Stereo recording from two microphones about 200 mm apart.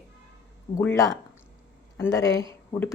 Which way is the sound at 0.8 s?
15° left (ahead or behind).